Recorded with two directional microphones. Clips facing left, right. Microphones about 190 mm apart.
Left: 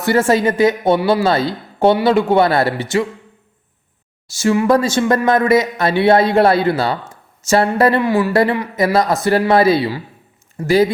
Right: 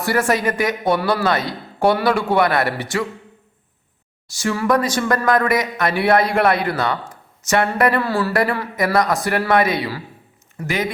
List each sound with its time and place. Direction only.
0.0 s a woman's voice: 25° left (ahead or behind)
4.3 s a woman's voice: 25° left (ahead or behind)
7.1 s a sound: 30° left (ahead or behind)
7.8 s a woman's voice: 25° left (ahead or behind)